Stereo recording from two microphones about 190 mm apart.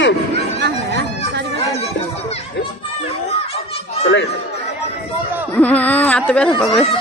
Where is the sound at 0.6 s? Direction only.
60° right (ahead or behind).